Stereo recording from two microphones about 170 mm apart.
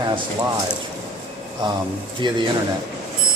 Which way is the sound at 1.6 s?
25° right (ahead or behind).